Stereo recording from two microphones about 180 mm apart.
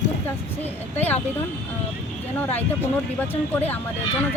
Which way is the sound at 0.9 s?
10° left (ahead or behind).